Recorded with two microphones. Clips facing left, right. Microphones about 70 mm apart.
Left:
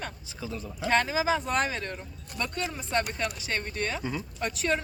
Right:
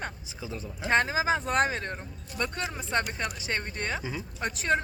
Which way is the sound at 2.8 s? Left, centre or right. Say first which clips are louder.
Even; right.